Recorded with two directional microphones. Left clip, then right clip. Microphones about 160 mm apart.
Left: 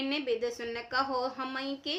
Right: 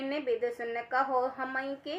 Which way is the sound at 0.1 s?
20° left (ahead or behind).